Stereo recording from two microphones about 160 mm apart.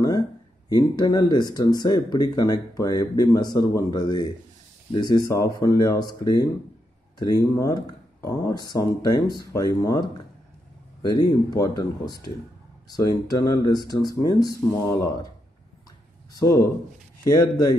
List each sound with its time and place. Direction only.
0.7 s speech: 25° left (ahead or behind)
7.2 s speech: 25° left (ahead or behind)
16.3 s speech: 20° left (ahead or behind)